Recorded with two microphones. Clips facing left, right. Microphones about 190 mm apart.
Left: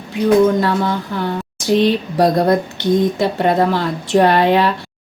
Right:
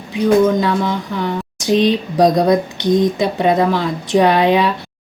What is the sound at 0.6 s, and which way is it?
A woman's voice, 15° right (ahead or behind).